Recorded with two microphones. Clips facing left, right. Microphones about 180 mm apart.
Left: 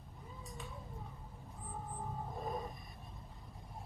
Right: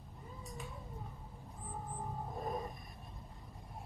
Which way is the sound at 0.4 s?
Centre (ahead or behind).